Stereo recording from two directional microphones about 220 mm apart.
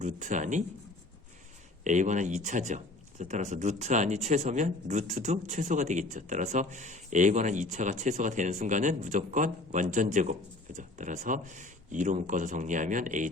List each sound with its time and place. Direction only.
0.0 s speech: 35° right (ahead or behind)
1.8 s speech: 35° right (ahead or behind)